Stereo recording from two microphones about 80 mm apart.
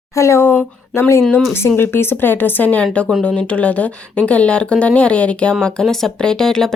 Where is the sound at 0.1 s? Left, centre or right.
Left.